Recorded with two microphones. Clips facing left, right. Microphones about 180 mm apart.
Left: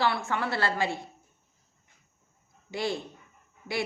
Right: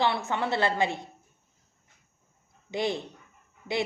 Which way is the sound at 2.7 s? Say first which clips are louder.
Right 2 dB; 20° right (ahead or behind).